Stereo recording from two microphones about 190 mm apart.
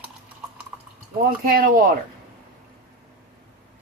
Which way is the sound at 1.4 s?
45° right (ahead or behind).